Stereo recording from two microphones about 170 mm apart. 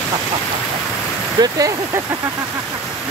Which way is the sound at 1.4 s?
20° right (ahead or behind).